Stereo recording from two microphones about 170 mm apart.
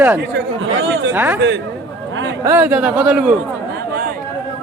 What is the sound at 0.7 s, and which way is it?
Chatter, 90° right.